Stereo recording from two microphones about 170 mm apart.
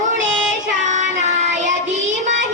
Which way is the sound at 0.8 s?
45° right (ahead or behind).